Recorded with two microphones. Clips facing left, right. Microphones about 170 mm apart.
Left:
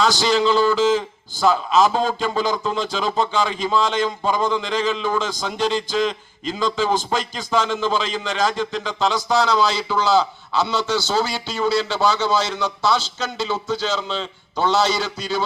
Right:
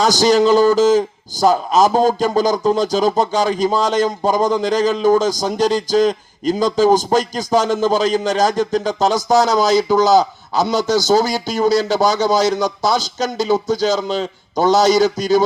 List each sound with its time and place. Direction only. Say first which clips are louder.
0.0 s a man's voice: right 5 dB; 40° right (ahead or behind)